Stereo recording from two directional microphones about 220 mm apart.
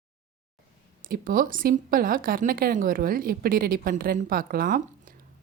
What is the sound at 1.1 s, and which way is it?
A woman's voice, 40° right (ahead or behind).